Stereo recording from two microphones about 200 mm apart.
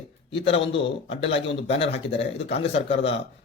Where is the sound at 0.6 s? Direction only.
65° left (ahead or behind).